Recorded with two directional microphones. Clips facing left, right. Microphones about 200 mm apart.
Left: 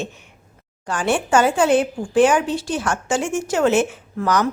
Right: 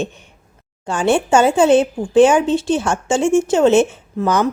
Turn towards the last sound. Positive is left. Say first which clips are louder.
# right 3 dB
turn(degrees=-25)  # may be behind; listen again after turning